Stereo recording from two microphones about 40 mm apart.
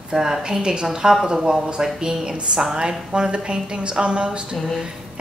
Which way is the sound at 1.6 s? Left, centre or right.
Centre.